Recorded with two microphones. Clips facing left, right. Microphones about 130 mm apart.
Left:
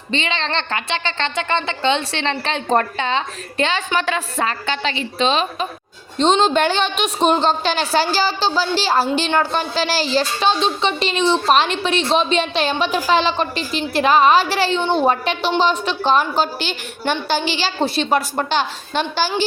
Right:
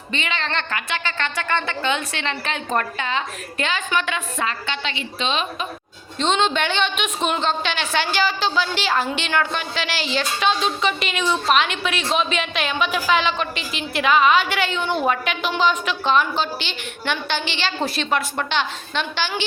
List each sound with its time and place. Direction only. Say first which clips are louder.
0.1 s a woman's voice: left 4 dB; 30° left (ahead or behind)